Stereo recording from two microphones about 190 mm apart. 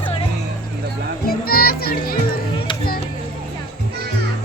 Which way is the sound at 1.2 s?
50° left (ahead or behind).